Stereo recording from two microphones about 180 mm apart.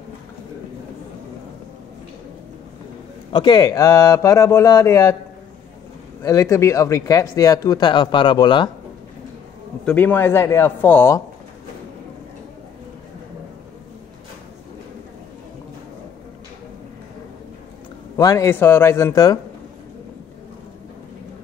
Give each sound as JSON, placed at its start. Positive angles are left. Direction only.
{"t": 3.3, "sound": "speech", "side_deg": 25}
{"t": 6.2, "sound": "speech", "side_deg": 15}
{"t": 9.8, "sound": "speech", "side_deg": 10}
{"t": 18.1, "sound": "speech", "side_deg": 20}